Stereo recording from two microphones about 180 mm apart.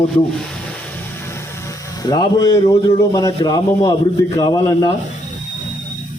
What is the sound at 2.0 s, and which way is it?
A man's voice, 20° left (ahead or behind).